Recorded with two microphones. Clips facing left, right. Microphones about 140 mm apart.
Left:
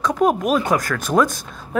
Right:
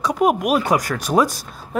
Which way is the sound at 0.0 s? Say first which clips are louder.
Even; 15° right (ahead or behind).